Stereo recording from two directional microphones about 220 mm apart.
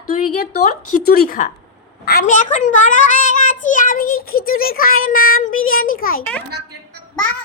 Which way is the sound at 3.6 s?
35° left (ahead or behind).